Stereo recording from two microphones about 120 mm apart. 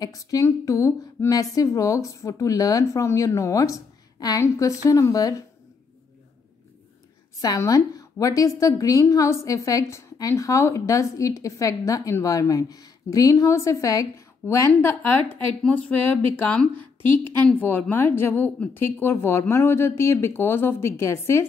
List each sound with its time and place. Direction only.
0.0 s a woman's voice: 30° left (ahead or behind)
7.4 s a woman's voice: 30° left (ahead or behind)